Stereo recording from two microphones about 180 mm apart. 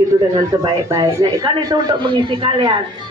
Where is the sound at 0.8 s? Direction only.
20° right (ahead or behind).